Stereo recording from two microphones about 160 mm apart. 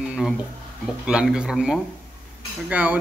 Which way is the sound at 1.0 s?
5° right (ahead or behind).